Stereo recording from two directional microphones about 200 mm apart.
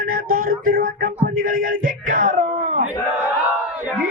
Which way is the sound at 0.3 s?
90° right.